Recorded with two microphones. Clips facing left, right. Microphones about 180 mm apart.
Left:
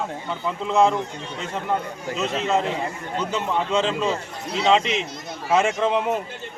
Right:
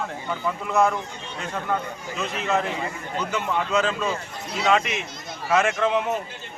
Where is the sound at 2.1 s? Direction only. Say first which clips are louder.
Left 2 dB; 25° left (ahead or behind).